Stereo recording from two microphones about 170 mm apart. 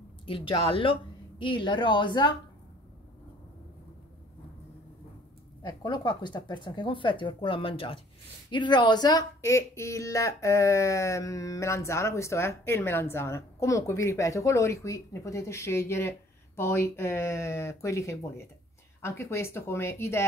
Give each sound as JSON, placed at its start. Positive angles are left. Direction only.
{"t": 0.3, "sound": "speech", "side_deg": 30}
{"t": 5.6, "sound": "speech", "side_deg": 25}